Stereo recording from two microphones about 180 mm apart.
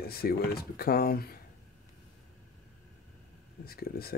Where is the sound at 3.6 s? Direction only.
60° left (ahead or behind).